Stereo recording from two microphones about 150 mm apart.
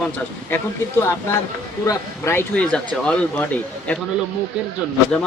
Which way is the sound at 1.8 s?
15° left (ahead or behind).